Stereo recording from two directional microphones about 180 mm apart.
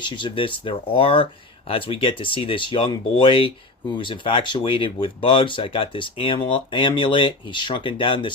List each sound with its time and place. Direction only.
0.0 s speech: 25° left (ahead or behind)